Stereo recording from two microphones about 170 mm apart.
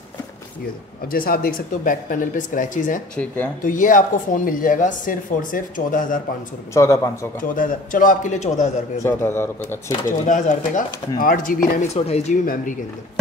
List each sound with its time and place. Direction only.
1.0 s speech: 55° left (ahead or behind)
6.7 s speech: 15° left (ahead or behind)
7.4 s speech: 55° left (ahead or behind)
9.0 s speech: 15° left (ahead or behind)
10.0 s speech: 50° left (ahead or behind)